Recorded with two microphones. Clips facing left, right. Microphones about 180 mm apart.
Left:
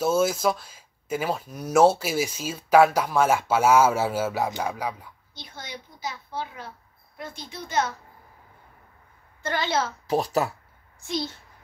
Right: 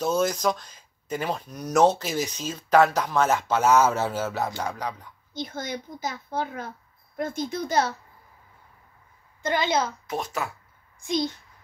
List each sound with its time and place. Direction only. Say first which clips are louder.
0.0 s speech: left 2 dB; 5° left (ahead or behind)
5.3 s a child's voice: right 9 dB; 45° right (ahead or behind)
9.4 s a woman's voice: right 2 dB; 15° right (ahead or behind)
10.0 s speech: left 6 dB; 35° left (ahead or behind)
11.0 s a child's voice: right 4 dB; 15° right (ahead or behind)